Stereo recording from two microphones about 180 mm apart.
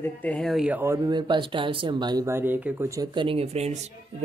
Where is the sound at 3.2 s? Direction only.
35° right (ahead or behind).